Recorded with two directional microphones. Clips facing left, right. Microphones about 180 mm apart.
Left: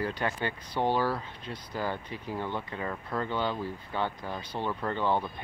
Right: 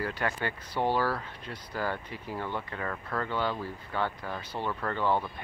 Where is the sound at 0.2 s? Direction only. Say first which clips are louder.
Even; 20° left (ahead or behind).